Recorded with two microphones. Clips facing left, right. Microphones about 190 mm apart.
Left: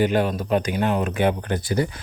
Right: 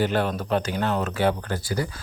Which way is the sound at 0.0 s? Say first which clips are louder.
Left 3 dB; 15° left (ahead or behind).